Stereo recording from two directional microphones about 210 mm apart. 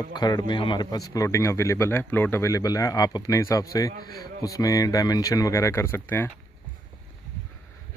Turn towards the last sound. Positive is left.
turn(degrees=10)  # may be behind; listen again after turning